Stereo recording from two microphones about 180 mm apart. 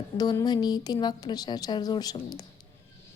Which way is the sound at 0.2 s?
20° left (ahead or behind).